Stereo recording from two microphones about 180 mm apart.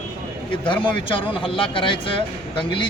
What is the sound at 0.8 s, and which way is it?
Speech, 30° left (ahead or behind).